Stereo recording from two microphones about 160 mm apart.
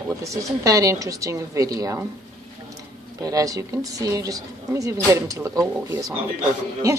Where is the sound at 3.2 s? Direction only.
20° right (ahead or behind).